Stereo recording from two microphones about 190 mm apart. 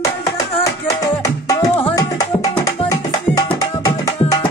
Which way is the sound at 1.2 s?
15° left (ahead or behind).